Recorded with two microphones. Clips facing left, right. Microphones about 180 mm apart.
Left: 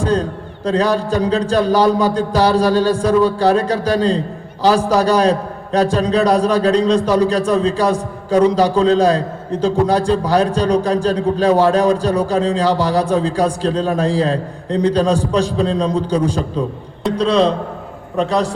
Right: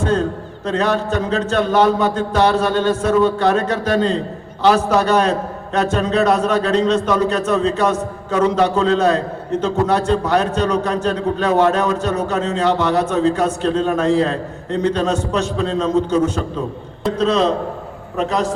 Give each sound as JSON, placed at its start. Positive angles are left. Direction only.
{"t": 0.0, "sound": "a man's voice", "side_deg": 35}